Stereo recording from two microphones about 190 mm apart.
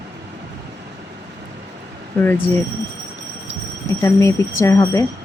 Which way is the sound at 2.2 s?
10° left (ahead or behind).